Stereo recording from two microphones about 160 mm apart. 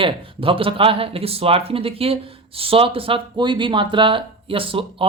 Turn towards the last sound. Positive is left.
turn(degrees=-35)  # may be behind; listen again after turning